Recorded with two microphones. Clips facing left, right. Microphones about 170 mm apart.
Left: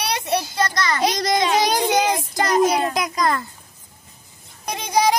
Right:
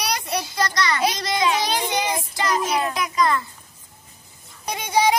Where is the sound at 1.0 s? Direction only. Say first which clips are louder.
Left 4 dB; 40° left (ahead or behind).